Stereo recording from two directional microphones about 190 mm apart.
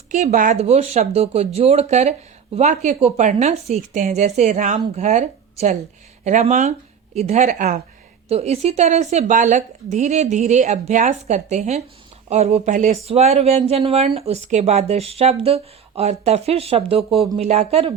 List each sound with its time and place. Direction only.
0.1 s speech: 40° right (ahead or behind)